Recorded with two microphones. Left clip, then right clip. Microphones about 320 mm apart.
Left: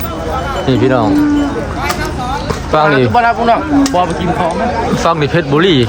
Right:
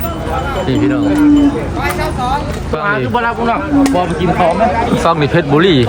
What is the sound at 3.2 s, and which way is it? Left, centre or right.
Speech, left.